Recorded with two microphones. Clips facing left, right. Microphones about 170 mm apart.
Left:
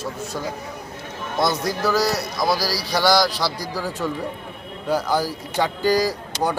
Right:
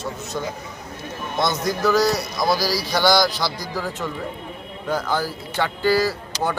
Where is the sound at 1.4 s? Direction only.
10° left (ahead or behind).